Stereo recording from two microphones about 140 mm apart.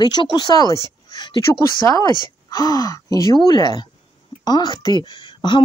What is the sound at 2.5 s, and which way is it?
A woman's voice, 25° left (ahead or behind).